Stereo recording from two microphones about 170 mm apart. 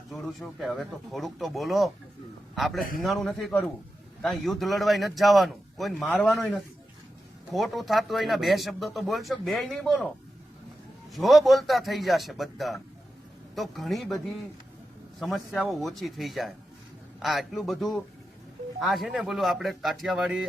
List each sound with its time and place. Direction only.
0.1 s speech: centre (ahead or behind)
11.1 s speech: centre (ahead or behind)